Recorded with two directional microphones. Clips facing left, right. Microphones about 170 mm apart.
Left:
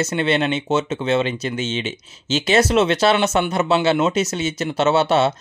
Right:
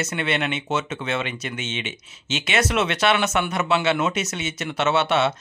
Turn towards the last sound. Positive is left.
turn(degrees=35)  # may be behind; listen again after turning